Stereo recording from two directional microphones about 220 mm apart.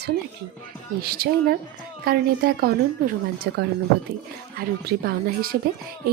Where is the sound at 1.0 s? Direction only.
45° right (ahead or behind).